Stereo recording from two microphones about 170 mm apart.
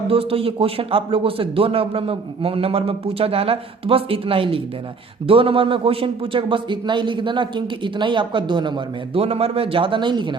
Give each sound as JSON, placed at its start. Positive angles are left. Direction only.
{"t": 0.1, "sound": "a man's voice", "side_deg": -35}